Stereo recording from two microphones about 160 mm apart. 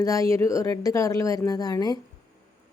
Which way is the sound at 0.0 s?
20° left (ahead or behind).